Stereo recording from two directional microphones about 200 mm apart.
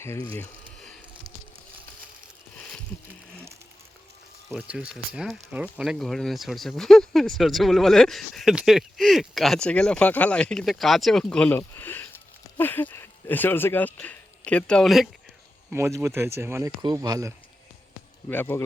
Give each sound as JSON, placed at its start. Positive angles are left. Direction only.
{"t": 0.0, "sound": "speech", "side_deg": 10}
{"t": 0.3, "sound": "a sound", "side_deg": 5}
{"t": 2.6, "sound": "a sound", "side_deg": 5}
{"t": 4.4, "sound": "speech", "side_deg": -5}
{"t": 15.7, "sound": "speech", "side_deg": -15}
{"t": 18.3, "sound": "speech", "side_deg": 10}